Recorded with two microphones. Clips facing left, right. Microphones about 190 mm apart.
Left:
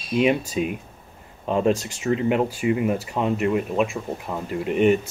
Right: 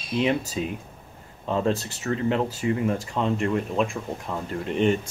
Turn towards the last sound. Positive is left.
turn(degrees=10)  # may be behind; listen again after turning